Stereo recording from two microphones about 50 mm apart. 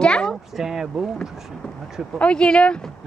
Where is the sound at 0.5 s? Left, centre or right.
Centre.